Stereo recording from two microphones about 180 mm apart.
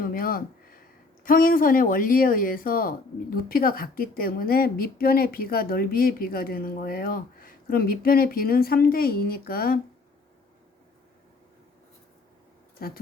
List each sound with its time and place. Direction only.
0.0 s a sound: 55° left (ahead or behind)
1.2 s speech: 50° left (ahead or behind)
12.8 s speech: 55° left (ahead or behind)